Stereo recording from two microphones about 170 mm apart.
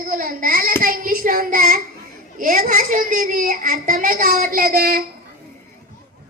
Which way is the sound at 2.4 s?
55° right (ahead or behind).